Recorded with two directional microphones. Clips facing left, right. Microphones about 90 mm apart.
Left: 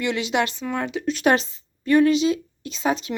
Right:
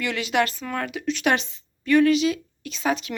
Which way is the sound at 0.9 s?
30° left (ahead or behind).